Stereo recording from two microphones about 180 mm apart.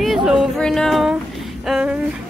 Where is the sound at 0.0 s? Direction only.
Centre (ahead or behind).